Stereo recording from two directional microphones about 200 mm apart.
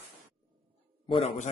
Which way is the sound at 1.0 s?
30° left (ahead or behind).